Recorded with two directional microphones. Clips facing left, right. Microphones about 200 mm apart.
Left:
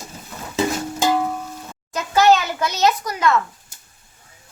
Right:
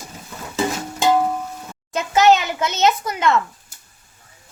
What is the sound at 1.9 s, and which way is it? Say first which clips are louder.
A woman's voice: right 1 dB; 25° right (ahead or behind).